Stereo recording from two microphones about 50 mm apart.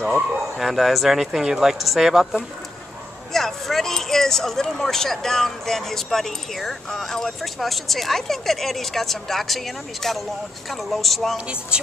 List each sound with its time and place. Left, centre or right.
0.0 s speech: centre
3.3 s speech: centre
11.3 s speech: right